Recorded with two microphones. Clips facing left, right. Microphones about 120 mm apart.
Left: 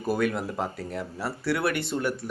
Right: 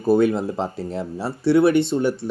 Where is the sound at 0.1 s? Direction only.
25° right (ahead or behind).